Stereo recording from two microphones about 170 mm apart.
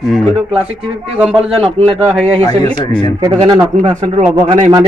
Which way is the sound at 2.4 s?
20° left (ahead or behind).